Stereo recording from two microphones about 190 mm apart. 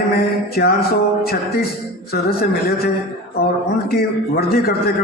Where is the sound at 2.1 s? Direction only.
55° left (ahead or behind).